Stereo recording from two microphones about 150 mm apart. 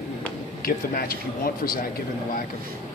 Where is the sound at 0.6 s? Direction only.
75° left (ahead or behind).